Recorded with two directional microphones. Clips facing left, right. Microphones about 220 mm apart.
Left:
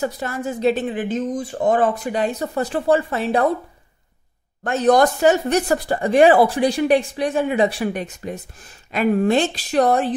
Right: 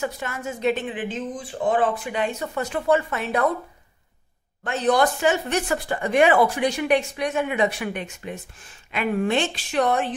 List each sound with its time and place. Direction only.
0.0 s speech: 35° left (ahead or behind)
4.6 s speech: 45° left (ahead or behind)